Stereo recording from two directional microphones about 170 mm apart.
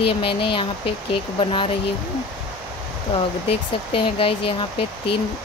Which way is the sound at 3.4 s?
35° left (ahead or behind).